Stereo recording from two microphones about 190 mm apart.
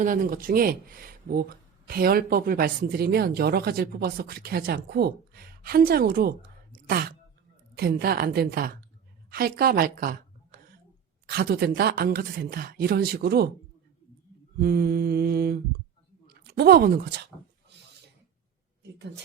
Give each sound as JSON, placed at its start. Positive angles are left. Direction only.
{"t": 0.0, "sound": "speech", "side_deg": -45}
{"t": 6.7, "sound": "a sound", "side_deg": -50}
{"t": 7.8, "sound": "a woman's voice", "side_deg": -55}
{"t": 14.6, "sound": "speech", "side_deg": -55}